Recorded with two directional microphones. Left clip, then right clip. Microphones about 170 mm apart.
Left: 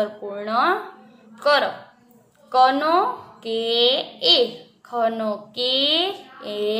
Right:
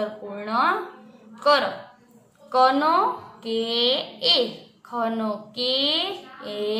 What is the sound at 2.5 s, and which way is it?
A woman's voice, 20° left (ahead or behind).